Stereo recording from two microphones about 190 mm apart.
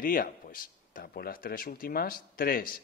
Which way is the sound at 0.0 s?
50° left (ahead or behind).